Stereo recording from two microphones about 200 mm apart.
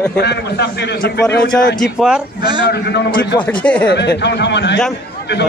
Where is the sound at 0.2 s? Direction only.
55° left (ahead or behind).